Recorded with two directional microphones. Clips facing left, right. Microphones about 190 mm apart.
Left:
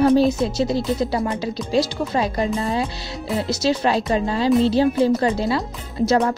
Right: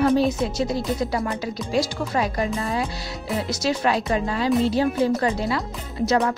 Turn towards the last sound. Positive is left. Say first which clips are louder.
# left 3 dB
turn(degrees=30)  # may be behind; listen again after turning